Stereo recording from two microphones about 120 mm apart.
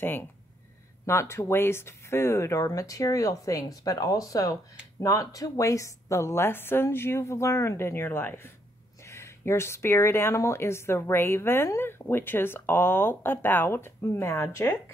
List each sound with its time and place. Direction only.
0.0 s speech: 15° left (ahead or behind)